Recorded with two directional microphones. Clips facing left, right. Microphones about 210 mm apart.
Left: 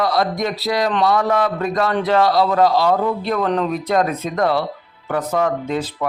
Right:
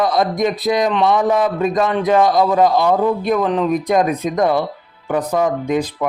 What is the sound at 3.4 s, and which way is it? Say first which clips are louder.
Speech: right 2 dB; 5° right (ahead or behind).